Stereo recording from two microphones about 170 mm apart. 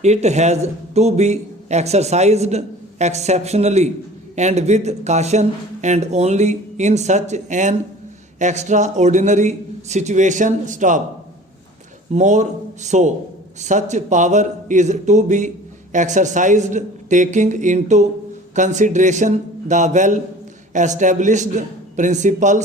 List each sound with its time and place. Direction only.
0.0 s a man's voice: 40° right (ahead or behind)
12.1 s a man's voice: 45° right (ahead or behind)